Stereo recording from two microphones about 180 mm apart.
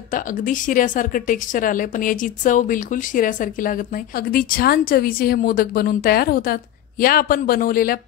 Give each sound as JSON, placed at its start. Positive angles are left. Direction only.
{"t": 0.1, "sound": "speech", "side_deg": 45}